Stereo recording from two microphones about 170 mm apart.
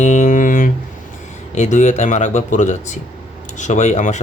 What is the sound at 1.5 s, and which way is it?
Mantra, 45° left (ahead or behind).